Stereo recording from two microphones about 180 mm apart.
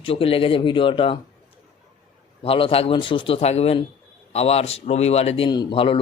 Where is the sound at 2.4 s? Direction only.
30° left (ahead or behind).